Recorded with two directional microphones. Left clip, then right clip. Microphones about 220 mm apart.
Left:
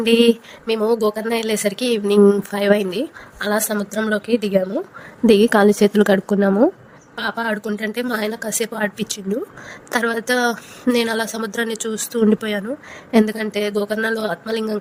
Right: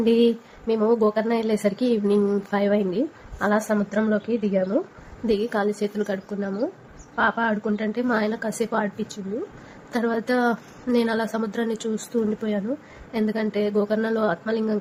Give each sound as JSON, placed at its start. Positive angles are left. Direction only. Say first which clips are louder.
{"t": 0.0, "sound": "a woman's voice", "louder": "left 5 dB", "side_deg": 50}